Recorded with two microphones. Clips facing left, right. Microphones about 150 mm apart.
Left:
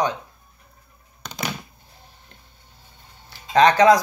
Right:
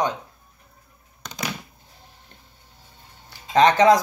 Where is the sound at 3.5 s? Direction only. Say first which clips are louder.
Left 1 dB; 25° right (ahead or behind).